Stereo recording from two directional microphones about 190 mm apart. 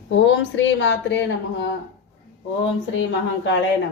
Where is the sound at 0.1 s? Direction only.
75° left (ahead or behind).